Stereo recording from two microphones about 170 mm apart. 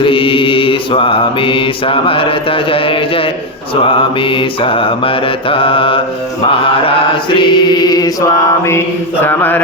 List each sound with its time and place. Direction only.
0.0 s mantra: 30° left (ahead or behind)
7.3 s mantra: 25° left (ahead or behind); by 9.6 s 10° left (ahead or behind)